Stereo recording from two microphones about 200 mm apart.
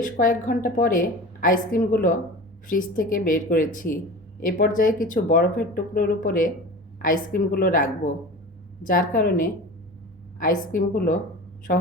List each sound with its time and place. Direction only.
0.0 s a woman's voice: 45° left (ahead or behind)